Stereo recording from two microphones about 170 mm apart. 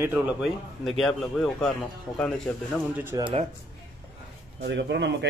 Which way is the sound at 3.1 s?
15° right (ahead or behind).